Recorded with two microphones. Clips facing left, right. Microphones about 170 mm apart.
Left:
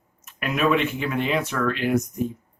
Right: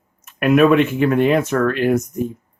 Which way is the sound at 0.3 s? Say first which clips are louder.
Right 9 dB; 55° right (ahead or behind).